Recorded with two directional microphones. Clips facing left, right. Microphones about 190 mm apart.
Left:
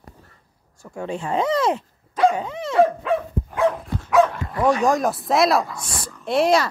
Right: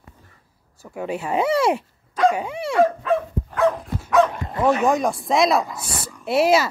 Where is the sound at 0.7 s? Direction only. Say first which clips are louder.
Right 1 dB; 5° right (ahead or behind).